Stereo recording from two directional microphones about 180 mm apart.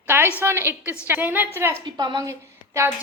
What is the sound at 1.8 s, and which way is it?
A woman's voice, 25° right (ahead or behind).